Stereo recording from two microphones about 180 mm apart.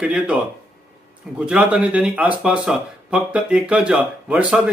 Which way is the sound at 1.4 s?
5° right (ahead or behind).